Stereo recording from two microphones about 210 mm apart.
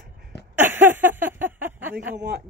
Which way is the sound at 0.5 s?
10° right (ahead or behind).